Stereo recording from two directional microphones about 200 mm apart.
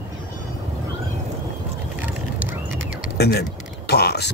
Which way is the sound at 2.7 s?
65° right (ahead or behind).